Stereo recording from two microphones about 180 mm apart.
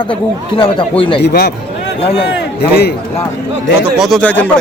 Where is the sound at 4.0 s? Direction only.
Centre (ahead or behind).